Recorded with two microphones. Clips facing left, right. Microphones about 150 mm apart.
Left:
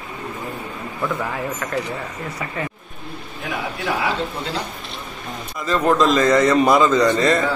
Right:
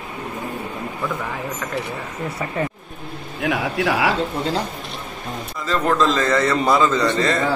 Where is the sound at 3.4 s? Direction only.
80° right.